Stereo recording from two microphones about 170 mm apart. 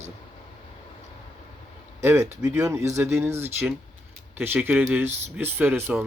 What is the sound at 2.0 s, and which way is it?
Speech, 15° right (ahead or behind).